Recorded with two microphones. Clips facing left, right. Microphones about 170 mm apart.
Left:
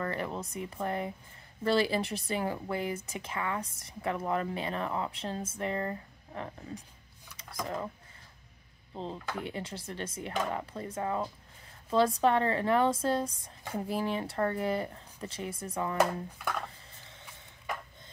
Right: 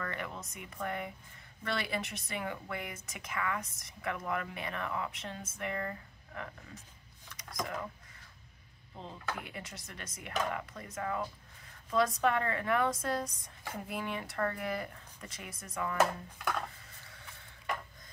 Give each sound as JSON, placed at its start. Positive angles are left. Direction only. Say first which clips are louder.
{"t": 0.0, "sound": "speech", "louder": "left 6 dB", "side_deg": 30}
{"t": 8.9, "sound": "speech", "louder": "left 4 dB", "side_deg": 30}
{"t": 17.0, "sound": "a sound", "louder": "left 2 dB", "side_deg": 25}